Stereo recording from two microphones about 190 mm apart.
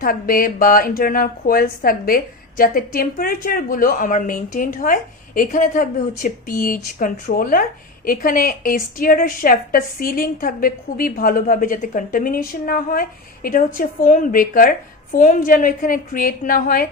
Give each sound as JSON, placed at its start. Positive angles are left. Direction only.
{"t": 0.0, "sound": "a woman's voice", "side_deg": 50}